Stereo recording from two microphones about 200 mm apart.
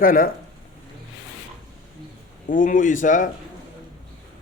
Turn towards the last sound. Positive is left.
turn(degrees=40)  # may be behind; listen again after turning